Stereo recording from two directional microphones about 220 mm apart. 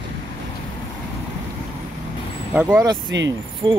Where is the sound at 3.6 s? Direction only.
20° right (ahead or behind).